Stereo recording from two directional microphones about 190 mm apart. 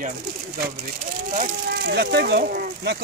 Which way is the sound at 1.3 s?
50° right (ahead or behind).